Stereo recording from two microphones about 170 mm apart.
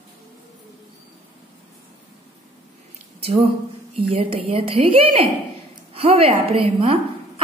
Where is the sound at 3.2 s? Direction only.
40° right (ahead or behind).